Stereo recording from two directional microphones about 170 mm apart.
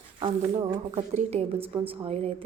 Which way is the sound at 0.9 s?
40° right (ahead or behind).